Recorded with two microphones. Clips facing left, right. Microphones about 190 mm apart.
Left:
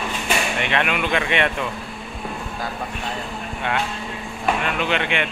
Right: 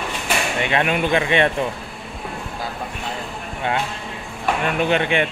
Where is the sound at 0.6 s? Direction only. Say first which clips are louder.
Right 5 dB; 30° right (ahead or behind).